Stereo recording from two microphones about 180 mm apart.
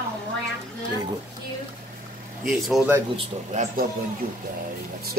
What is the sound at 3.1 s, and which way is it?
Speech, 40° right (ahead or behind).